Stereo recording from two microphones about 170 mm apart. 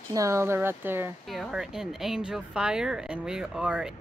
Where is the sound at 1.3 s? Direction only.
Centre (ahead or behind).